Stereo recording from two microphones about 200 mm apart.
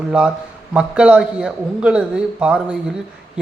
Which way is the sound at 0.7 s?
5° right (ahead or behind).